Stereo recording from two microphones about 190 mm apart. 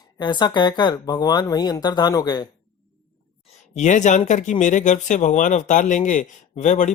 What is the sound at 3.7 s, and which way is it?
Speech, 40° left (ahead or behind).